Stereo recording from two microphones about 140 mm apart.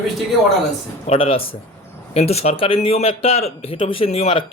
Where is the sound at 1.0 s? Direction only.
45° left (ahead or behind).